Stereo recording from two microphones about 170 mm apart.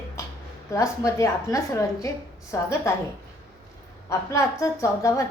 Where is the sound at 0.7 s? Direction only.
20° left (ahead or behind).